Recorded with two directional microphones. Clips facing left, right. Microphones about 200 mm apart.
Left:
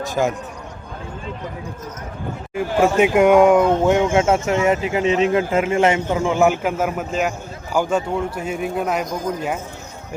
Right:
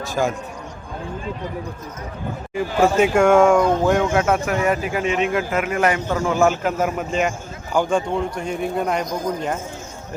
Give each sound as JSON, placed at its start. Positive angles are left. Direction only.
{"t": 0.0, "sound": "speech", "side_deg": 20}
{"t": 2.6, "sound": "a man's voice", "side_deg": 10}